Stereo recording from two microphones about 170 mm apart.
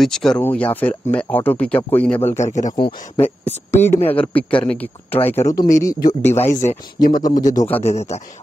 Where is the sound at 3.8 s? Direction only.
10° left (ahead or behind).